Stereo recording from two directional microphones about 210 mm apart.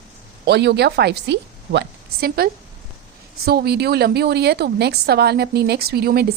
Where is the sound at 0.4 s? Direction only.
50° right (ahead or behind).